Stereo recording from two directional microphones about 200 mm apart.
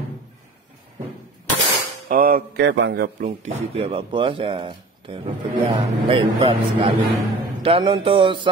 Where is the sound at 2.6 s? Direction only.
65° right (ahead or behind).